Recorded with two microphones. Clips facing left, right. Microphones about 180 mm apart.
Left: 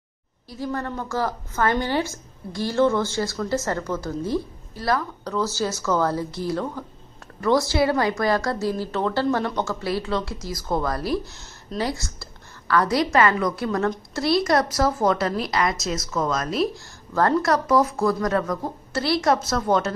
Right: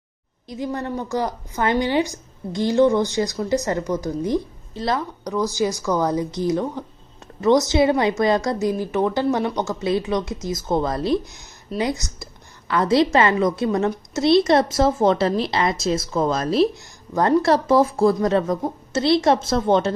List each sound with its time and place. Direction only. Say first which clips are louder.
0.5 s a woman's voice: right 2 dB; 20° right (ahead or behind)